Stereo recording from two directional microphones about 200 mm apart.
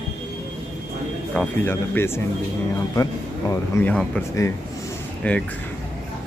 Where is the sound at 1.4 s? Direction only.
10° left (ahead or behind).